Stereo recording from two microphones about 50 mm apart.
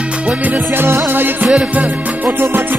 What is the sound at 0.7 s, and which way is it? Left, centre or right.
Music, right.